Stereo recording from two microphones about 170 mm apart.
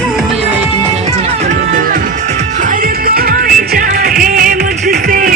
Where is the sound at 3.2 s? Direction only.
55° right (ahead or behind).